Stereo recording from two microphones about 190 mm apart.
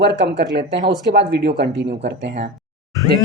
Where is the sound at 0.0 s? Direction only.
60° right (ahead or behind).